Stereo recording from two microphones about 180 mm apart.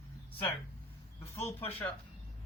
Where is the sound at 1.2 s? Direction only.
15° left (ahead or behind).